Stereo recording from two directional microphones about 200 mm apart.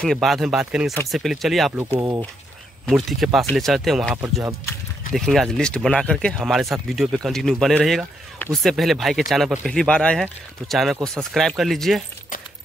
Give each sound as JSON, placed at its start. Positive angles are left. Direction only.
{"t": 0.0, "sound": "speech", "side_deg": 0}
{"t": 1.8, "sound": "speech", "side_deg": -20}
{"t": 2.9, "sound": "speech", "side_deg": 0}
{"t": 4.2, "sound": "speech", "side_deg": -15}
{"t": 5.1, "sound": "speech", "side_deg": 0}